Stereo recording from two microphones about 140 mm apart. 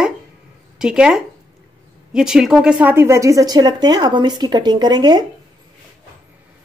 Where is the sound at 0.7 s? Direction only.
5° right (ahead or behind); by 5.2 s 30° right (ahead or behind).